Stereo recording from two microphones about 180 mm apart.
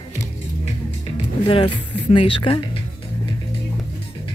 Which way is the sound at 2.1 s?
30° left (ahead or behind).